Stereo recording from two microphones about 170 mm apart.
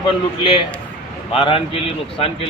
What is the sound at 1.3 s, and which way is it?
A man's voice, 30° left (ahead or behind).